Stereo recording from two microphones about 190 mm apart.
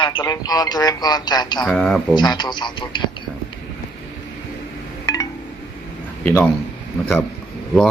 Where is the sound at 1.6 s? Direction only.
5° left (ahead or behind).